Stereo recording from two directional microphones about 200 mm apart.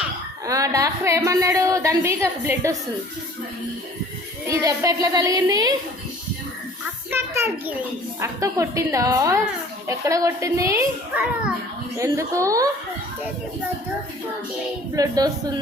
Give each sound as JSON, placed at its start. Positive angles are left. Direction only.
{"t": 0.4, "sound": "a woman's voice", "side_deg": -15}
{"t": 4.4, "sound": "a woman's voice", "side_deg": -15}
{"t": 7.1, "sound": "a child's voice", "side_deg": -10}
{"t": 14.9, "sound": "speech", "side_deg": -20}